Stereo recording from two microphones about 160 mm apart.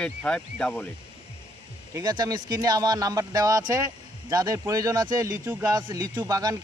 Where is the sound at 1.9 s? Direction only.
25° right (ahead or behind).